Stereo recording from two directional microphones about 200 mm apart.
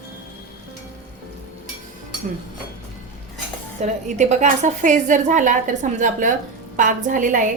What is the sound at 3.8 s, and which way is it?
A woman's voice, 35° right (ahead or behind).